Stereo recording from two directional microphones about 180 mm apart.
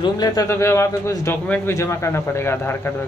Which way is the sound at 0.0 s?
20° left (ahead or behind).